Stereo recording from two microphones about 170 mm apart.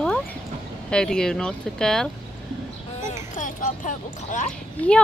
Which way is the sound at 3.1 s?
50° left (ahead or behind).